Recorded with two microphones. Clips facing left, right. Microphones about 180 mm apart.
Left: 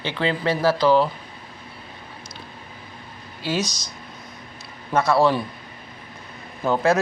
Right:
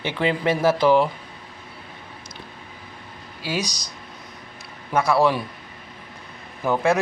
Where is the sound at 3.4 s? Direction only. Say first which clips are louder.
Left 2 dB; 10° right (ahead or behind).